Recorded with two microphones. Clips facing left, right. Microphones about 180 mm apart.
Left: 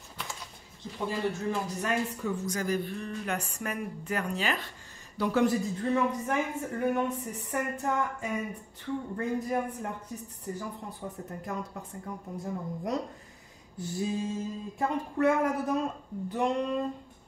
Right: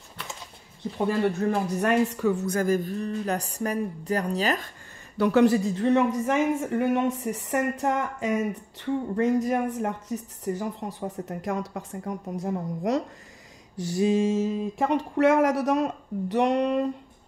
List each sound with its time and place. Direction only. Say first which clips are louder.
0.9 s speech: right 7 dB; 60° right (ahead or behind); by 4.6 s 40° right (ahead or behind)
5.1 s speech: right 6 dB; 70° right (ahead or behind); by 13.0 s 90° right
13.7 s a sound: right 9 dB; 90° right; by 16.8 s 70° right (ahead or behind)